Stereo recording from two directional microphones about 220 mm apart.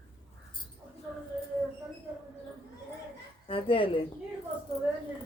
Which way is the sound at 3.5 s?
25° left (ahead or behind).